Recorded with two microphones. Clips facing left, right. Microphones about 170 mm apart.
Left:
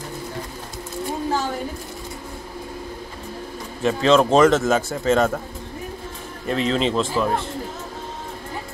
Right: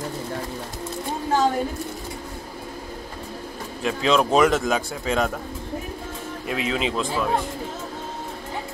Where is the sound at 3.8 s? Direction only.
Centre (ahead or behind).